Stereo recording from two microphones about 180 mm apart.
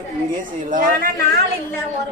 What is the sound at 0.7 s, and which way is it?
Speech, 50° right (ahead or behind).